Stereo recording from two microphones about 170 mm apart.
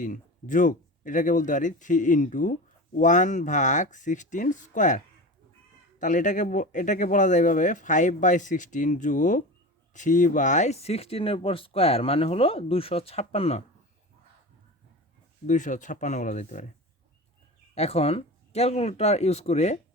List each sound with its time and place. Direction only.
0.0 s speech: 50° left (ahead or behind)
15.4 s speech: 45° left (ahead or behind)
17.7 s speech: 35° left (ahead or behind)